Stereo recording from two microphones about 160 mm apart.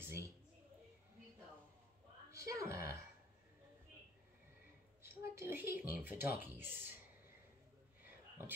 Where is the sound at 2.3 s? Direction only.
20° right (ahead or behind).